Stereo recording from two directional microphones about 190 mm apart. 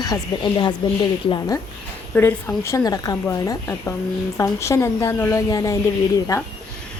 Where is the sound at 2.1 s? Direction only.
10° left (ahead or behind).